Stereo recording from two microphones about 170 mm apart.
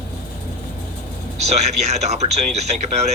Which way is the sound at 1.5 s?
40° right (ahead or behind).